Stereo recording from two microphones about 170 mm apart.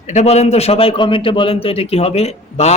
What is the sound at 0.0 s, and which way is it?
A man's voice, 45° left (ahead or behind).